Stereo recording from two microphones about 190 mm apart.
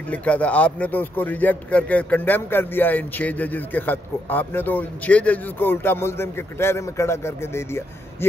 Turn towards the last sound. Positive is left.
turn(degrees=15)  # may be behind; listen again after turning